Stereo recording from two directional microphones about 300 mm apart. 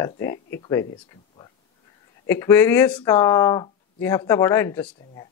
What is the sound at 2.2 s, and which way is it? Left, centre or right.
Speech, centre.